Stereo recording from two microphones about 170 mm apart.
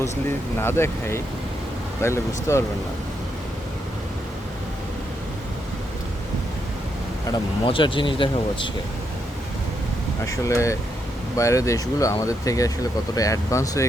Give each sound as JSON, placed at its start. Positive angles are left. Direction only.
{"t": 0.6, "sound": "speech", "side_deg": 15}
{"t": 7.6, "sound": "speech", "side_deg": 30}
{"t": 10.2, "sound": "speech", "side_deg": 20}